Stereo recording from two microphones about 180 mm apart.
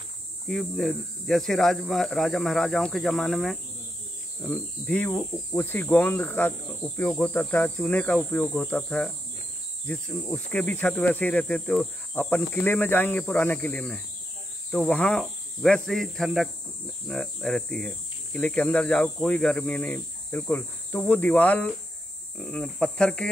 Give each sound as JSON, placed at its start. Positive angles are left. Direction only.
{"t": 0.5, "sound": "speech", "side_deg": 0}